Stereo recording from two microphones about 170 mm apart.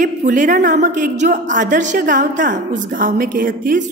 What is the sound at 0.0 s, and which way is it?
A woman's voice, 45° right (ahead or behind).